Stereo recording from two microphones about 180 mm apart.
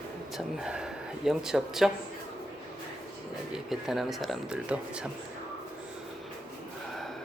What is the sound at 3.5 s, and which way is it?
Speech, centre (ahead or behind).